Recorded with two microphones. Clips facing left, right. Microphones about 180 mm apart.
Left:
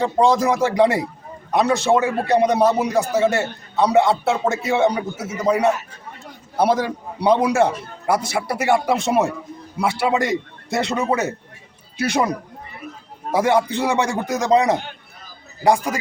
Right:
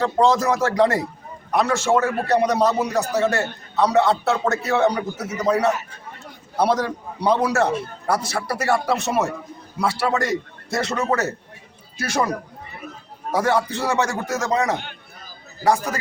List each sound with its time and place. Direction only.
0.0 s a man's voice: 15° left (ahead or behind)
13.4 s a man's voice: 15° left (ahead or behind)